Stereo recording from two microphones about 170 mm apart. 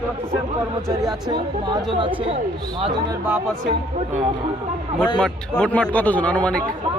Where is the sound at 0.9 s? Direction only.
20° right (ahead or behind).